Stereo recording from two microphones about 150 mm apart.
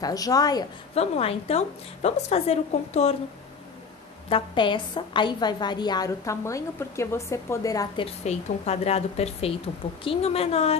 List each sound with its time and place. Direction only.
0.0 s a woman's voice: 25° left (ahead or behind)
0.9 s a woman's voice: 45° left (ahead or behind)
4.3 s a woman's voice: 35° left (ahead or behind)
8.0 s a woman's voice: 45° left (ahead or behind)